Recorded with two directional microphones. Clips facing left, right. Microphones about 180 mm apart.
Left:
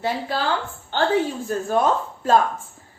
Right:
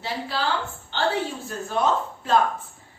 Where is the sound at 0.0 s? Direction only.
50° left (ahead or behind).